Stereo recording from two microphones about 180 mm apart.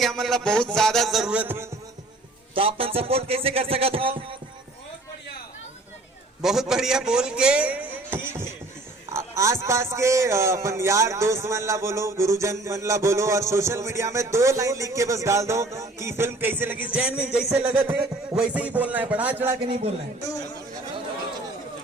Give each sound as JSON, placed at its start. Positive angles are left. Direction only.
{"t": 0.0, "sound": "a man's voice", "side_deg": 0}
{"t": 2.6, "sound": "speech", "side_deg": -30}
{"t": 6.4, "sound": "a man's voice", "side_deg": 0}
{"t": 19.6, "sound": "speech", "side_deg": -35}